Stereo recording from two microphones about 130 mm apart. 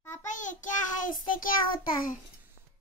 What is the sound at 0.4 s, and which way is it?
Child singing, 85° left.